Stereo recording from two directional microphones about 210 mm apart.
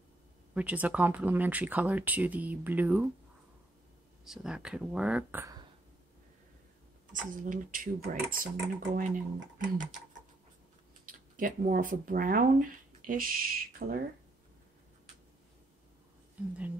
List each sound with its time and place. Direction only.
0.6 s speech: 5° right (ahead or behind)
4.2 s speech: centre (ahead or behind)
7.1 s speech: 40° right (ahead or behind)
11.1 s speech: 40° right (ahead or behind)